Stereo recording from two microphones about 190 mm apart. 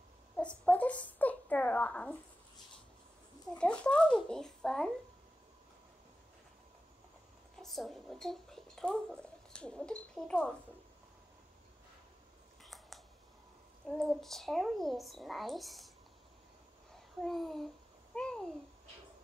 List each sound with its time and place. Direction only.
0.4 s a sound: 5° left (ahead or behind)
3.5 s a child's voice: 5° left (ahead or behind)
7.5 s speech: centre (ahead or behind)
12.6 s scissors: centre (ahead or behind)
13.8 s a child's voice: centre (ahead or behind)
17.2 s a child's voice: centre (ahead or behind)